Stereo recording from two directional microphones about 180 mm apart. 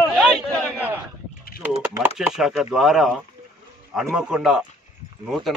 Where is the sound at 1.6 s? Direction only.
10° right (ahead or behind).